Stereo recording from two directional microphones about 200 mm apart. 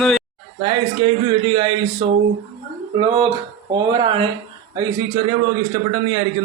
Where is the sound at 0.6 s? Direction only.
25° right (ahead or behind).